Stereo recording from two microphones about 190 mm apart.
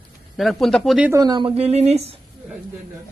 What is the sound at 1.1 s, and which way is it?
Speech, 20° right (ahead or behind).